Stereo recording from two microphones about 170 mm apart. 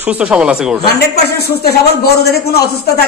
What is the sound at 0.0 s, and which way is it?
Speech, 10° right (ahead or behind).